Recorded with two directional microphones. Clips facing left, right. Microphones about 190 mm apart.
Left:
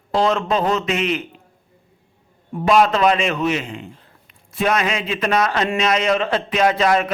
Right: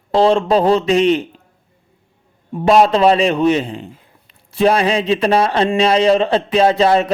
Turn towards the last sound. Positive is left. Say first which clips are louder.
# right 4 dB
turn(degrees=-30)  # may be behind; listen again after turning